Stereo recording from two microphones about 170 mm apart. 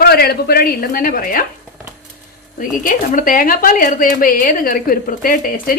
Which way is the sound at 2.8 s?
55° left (ahead or behind).